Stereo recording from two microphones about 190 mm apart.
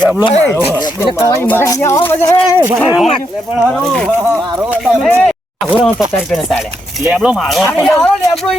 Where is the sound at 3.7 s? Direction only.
5° left (ahead or behind).